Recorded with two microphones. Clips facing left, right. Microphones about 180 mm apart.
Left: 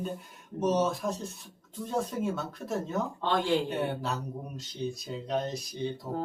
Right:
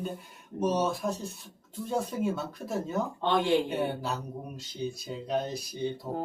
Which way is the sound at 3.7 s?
Centre (ahead or behind).